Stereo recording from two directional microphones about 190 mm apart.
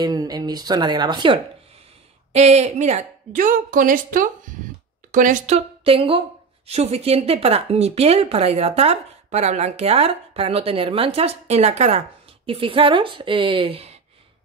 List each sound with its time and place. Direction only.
0.0 s a woman's voice: 20° right (ahead or behind)
2.3 s a woman's voice: 35° right (ahead or behind)